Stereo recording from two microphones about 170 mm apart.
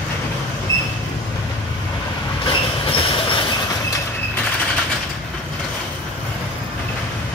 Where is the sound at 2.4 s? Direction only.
30° left (ahead or behind).